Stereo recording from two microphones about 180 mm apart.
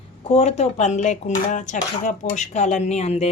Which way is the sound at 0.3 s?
35° left (ahead or behind).